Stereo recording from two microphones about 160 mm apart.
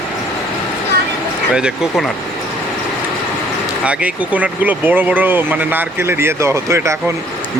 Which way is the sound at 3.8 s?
10° right (ahead or behind).